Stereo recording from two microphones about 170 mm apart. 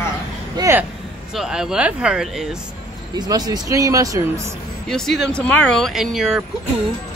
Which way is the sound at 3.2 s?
20° right (ahead or behind).